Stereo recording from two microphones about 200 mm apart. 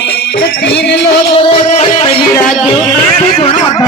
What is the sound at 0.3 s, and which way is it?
Music, 55° left (ahead or behind).